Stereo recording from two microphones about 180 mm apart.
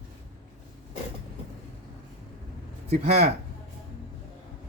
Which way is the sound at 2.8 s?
35° right (ahead or behind).